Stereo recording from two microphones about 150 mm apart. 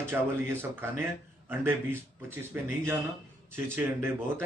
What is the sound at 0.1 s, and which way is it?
A man's voice, 15° right (ahead or behind).